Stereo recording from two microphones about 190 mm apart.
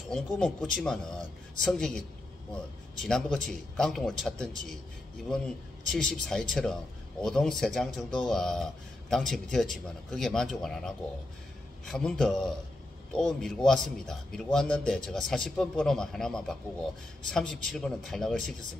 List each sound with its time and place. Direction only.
0.1 s a man's voice: centre (ahead or behind)
5.9 s a man's voice: centre (ahead or behind)